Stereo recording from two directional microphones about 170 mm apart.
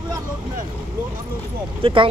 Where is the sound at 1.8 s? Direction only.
30° right (ahead or behind).